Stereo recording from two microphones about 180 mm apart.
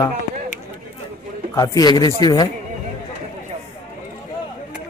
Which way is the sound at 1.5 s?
20° left (ahead or behind).